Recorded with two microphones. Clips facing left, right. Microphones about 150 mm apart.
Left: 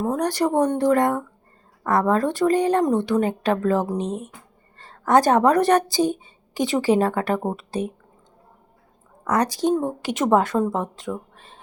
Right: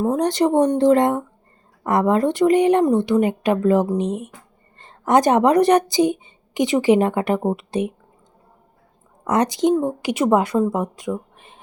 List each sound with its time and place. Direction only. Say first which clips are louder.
0.0 s a woman's voice: right 4 dB; 20° right (ahead or behind)
9.2 s speech: right 3 dB; 20° right (ahead or behind)